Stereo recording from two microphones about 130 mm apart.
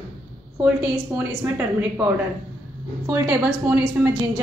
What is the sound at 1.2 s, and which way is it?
Speech, 20° right (ahead or behind).